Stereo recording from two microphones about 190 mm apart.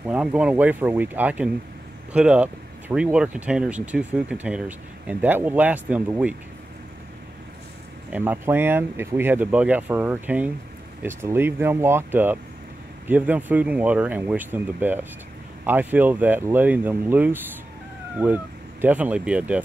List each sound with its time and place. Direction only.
0.1 s speech: 5° right (ahead or behind)
8.1 s speech: 10° right (ahead or behind)